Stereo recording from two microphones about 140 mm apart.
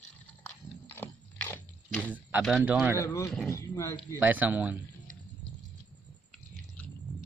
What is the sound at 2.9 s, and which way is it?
Speech, 20° left (ahead or behind).